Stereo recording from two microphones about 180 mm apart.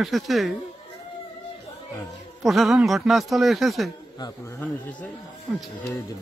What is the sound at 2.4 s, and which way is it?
Speech, centre (ahead or behind).